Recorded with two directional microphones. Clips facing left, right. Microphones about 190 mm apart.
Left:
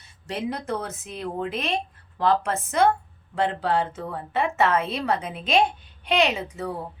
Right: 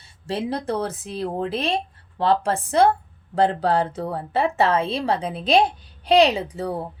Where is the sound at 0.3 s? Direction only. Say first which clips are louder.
Right 3 dB; 30° right (ahead or behind).